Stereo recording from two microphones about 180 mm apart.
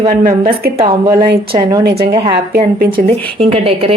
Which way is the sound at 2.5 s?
55° right (ahead or behind).